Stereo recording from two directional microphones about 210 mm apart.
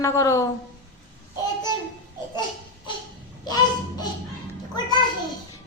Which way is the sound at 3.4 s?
20° left (ahead or behind).